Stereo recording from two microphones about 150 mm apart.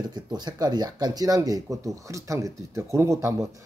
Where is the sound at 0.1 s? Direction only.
30° right (ahead or behind).